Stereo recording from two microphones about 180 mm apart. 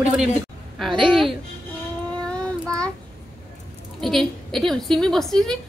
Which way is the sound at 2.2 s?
5° left (ahead or behind).